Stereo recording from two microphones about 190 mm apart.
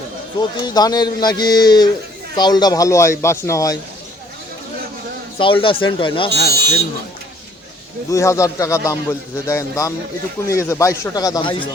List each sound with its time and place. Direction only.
0.3 s a man's voice: 20° left (ahead or behind)
5.4 s a man's voice: 25° left (ahead or behind)
8.1 s a man's voice: 15° left (ahead or behind)